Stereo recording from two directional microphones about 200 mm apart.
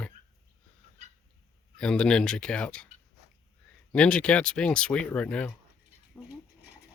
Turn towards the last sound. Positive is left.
turn(degrees=5)  # may be behind; listen again after turning